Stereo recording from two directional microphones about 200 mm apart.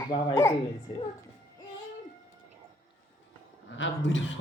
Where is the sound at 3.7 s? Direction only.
65° left (ahead or behind).